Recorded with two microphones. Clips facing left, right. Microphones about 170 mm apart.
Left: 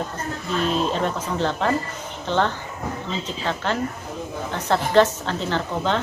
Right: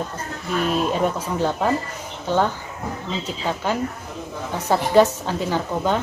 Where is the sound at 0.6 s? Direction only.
10° right (ahead or behind).